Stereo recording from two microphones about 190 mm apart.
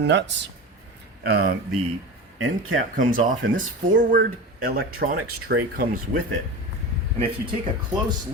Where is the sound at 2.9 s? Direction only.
45° right (ahead or behind).